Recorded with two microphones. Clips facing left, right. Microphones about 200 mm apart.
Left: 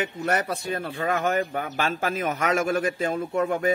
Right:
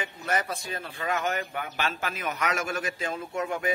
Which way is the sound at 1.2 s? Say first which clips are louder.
Left 6 dB; 35° left (ahead or behind).